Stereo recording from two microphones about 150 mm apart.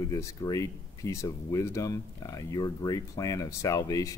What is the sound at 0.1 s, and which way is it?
Speech, 20° left (ahead or behind).